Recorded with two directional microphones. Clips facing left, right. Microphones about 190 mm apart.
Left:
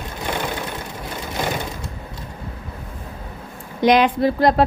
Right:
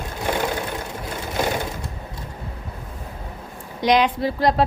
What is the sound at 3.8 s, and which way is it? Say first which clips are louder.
Speech: left 3 dB; 55° left (ahead or behind).